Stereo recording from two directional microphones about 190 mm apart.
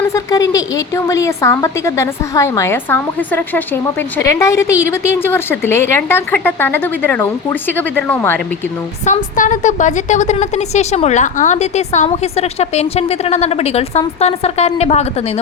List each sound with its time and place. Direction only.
0.1 s a woman's voice: 20° left (ahead or behind)
9.0 s a woman's voice: 40° left (ahead or behind)